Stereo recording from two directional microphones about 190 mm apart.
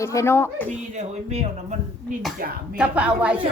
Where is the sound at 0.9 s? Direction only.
35° right (ahead or behind).